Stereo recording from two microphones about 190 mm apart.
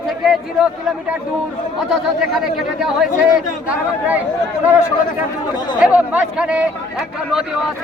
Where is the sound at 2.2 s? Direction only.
5° right (ahead or behind).